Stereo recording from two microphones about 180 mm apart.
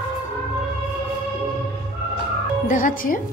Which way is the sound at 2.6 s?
50° left (ahead or behind).